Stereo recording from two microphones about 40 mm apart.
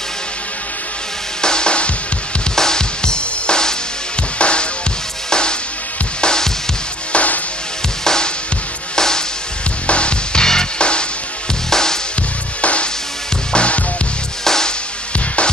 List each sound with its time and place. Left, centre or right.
1.4 s music: left
2.5 s music: centre
7.1 s music: left
8.0 s music: centre
9.8 s music: left
12.6 s music: left
14.4 s music: centre
15.1 s music: left